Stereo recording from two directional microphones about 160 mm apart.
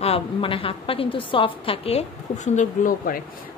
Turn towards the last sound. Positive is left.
turn(degrees=60)  # may be behind; listen again after turning